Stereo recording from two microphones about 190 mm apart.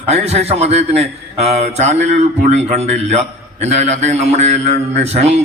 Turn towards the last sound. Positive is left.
turn(degrees=-35)  # may be behind; listen again after turning